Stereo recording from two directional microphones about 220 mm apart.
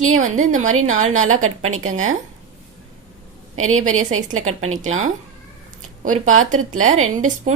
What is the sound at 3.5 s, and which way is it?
Speech, 70° right (ahead or behind).